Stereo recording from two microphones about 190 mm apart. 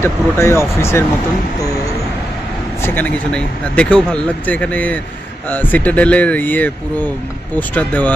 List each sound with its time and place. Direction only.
0.0 s speech: 15° left (ahead or behind)
2.8 s speech: 10° left (ahead or behind)